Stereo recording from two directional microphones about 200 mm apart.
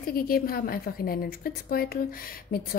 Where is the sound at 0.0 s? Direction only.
50° left (ahead or behind).